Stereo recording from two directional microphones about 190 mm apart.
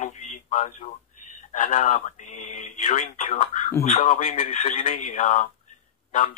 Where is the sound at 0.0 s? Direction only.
40° left (ahead or behind).